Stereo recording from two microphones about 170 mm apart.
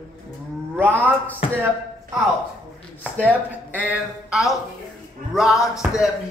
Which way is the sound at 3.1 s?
10° right (ahead or behind).